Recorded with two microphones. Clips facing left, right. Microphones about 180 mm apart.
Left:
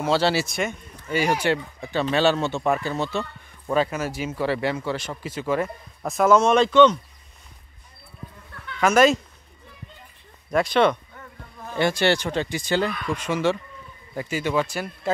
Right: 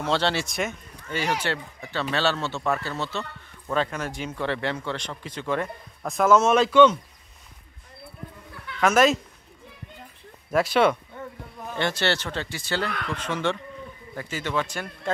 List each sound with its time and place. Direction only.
0.0 s a man's voice: 5° left (ahead or behind)
1.1 s speech: 10° left (ahead or behind); by 7.0 s 5° right (ahead or behind)
8.6 s speech: centre (ahead or behind)
10.5 s a sound: 5° right (ahead or behind)
11.7 s speech: 10° left (ahead or behind)